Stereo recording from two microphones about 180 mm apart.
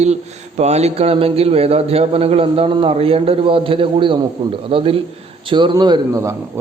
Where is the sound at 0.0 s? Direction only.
40° right (ahead or behind).